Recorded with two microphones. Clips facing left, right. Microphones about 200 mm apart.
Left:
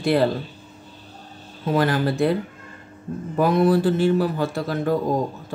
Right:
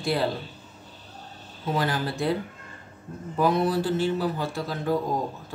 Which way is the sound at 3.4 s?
55° left (ahead or behind).